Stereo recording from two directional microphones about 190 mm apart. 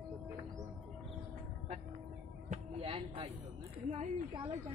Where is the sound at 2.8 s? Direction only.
30° right (ahead or behind).